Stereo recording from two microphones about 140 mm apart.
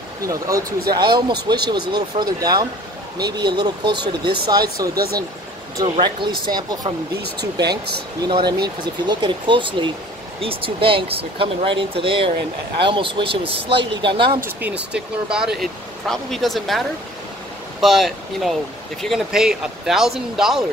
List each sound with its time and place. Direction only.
0.2 s speech: 25° right (ahead or behind)
4.9 s speech: 90° right
5.9 s speech: 35° right (ahead or behind)
14.4 s speech: 10° right (ahead or behind)